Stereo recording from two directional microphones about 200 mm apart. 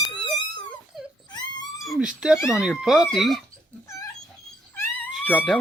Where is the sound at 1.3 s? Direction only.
20° left (ahead or behind).